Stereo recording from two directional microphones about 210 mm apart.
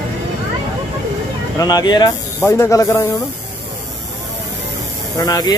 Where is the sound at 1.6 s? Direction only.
15° left (ahead or behind).